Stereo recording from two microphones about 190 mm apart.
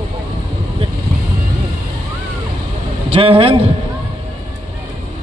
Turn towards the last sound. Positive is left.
turn(degrees=-30)  # may be behind; listen again after turning